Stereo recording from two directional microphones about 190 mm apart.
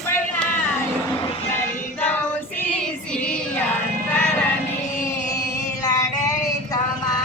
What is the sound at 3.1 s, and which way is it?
Female singing, 5° left (ahead or behind).